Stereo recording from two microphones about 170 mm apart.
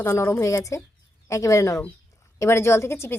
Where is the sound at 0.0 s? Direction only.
15° left (ahead or behind).